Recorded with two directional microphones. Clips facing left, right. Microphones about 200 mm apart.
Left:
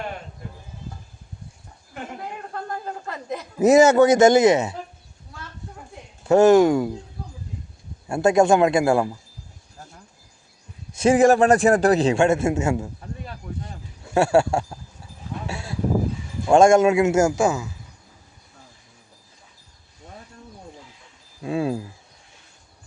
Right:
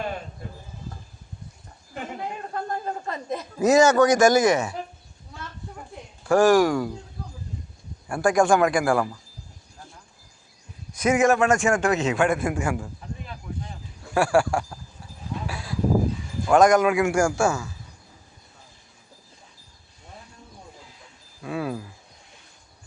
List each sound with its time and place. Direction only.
2.6 s a woman's voice: 20° right (ahead or behind)
3.6 s a man's voice: 25° left (ahead or behind)
6.2 s a man's voice: 20° left (ahead or behind)
8.0 s a man's voice: 25° left (ahead or behind)
10.9 s a man's voice: 30° left (ahead or behind)
14.1 s a man's voice: 25° left (ahead or behind)
15.4 s a sound: 25° left (ahead or behind)
16.5 s a man's voice: 25° left (ahead or behind)
21.4 s a man's voice: 25° left (ahead or behind)